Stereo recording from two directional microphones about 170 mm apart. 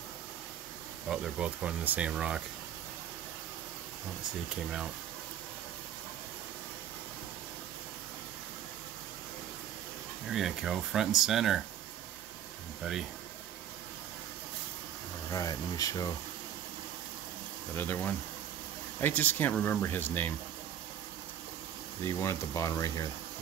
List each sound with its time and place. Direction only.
1.0 s speech: 5° right (ahead or behind)
4.6 s speech: 5° right (ahead or behind)
10.3 s speech: centre (ahead or behind)
15.3 s speech: 20° left (ahead or behind)
17.7 s speech: 10° left (ahead or behind)
22.0 s speech: 15° left (ahead or behind)